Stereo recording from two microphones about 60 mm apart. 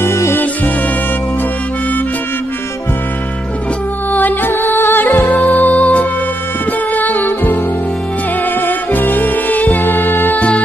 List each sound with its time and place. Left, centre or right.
0.0 s music: left
4.1 s music: left
8.5 s music: left